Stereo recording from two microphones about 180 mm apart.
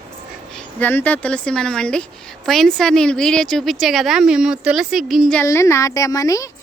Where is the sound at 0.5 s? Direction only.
10° left (ahead or behind).